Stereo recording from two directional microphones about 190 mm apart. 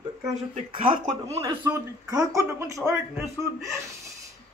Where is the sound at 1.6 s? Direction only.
15° right (ahead or behind).